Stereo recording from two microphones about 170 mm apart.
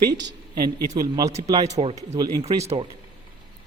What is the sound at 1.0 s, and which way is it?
Speech, 20° right (ahead or behind).